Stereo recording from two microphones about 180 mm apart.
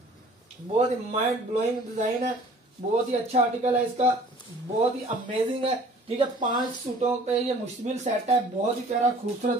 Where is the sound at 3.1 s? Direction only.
35° right (ahead or behind).